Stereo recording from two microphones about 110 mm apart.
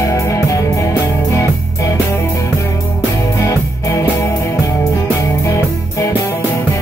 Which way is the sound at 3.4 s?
30° left (ahead or behind).